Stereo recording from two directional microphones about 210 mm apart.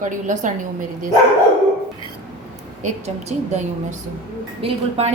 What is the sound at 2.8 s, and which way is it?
A woman's voice, 30° right (ahead or behind).